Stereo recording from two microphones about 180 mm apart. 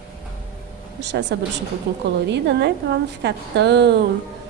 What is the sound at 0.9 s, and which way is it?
Speech, 75° right (ahead or behind).